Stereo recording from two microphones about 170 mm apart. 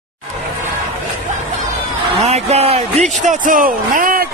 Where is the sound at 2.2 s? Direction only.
40° right (ahead or behind).